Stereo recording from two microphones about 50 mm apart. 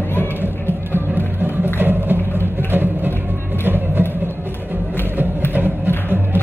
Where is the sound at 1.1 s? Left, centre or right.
Right.